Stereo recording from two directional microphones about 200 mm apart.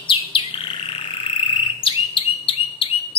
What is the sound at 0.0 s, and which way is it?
Bird, 25° left (ahead or behind).